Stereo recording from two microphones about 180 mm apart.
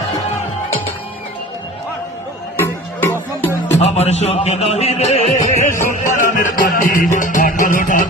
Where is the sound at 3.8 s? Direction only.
35° left (ahead or behind).